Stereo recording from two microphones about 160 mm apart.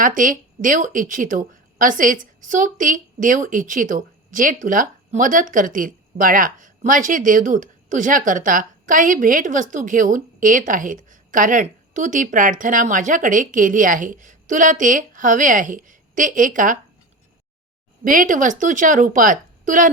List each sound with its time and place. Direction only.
0.0 s a woman's voice: 55° right (ahead or behind)
18.0 s a woman's voice: 60° right (ahead or behind)